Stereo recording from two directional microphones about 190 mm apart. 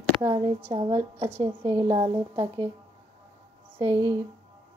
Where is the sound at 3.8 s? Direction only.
20° right (ahead or behind).